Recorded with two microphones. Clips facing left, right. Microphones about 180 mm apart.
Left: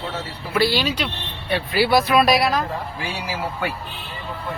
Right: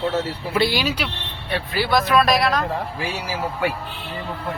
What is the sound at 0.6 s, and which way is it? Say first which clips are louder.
Speech: left 1 dB; 10° right (ahead or behind).